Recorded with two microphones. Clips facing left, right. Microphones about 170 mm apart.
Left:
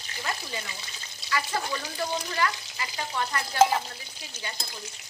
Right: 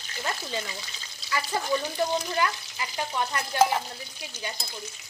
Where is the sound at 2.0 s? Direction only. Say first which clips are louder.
Right 3 dB; 20° right (ahead or behind).